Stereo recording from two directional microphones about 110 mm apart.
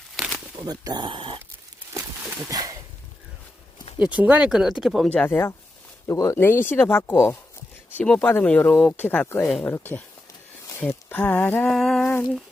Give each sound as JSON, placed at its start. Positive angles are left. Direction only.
{"t": 0.2, "sound": "crumpling", "side_deg": 0}
{"t": 0.6, "sound": "speech", "side_deg": -35}
{"t": 2.5, "sound": "a sound", "side_deg": -35}
{"t": 3.9, "sound": "speech", "side_deg": -15}
{"t": 5.0, "sound": "speech", "side_deg": 15}
{"t": 7.9, "sound": "speech", "side_deg": 10}
{"t": 11.1, "sound": "speech", "side_deg": 15}
{"t": 11.7, "sound": "a sound", "side_deg": 5}